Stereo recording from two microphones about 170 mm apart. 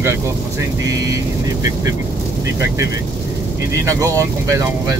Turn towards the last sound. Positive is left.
turn(degrees=-20)  # may be behind; listen again after turning